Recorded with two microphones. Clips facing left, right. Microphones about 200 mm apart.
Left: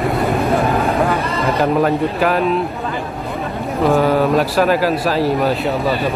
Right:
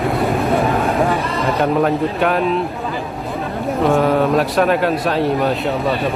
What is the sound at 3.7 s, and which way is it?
Speech, centre (ahead or behind).